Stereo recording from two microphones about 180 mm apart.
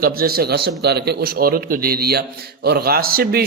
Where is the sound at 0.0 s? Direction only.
55° right (ahead or behind).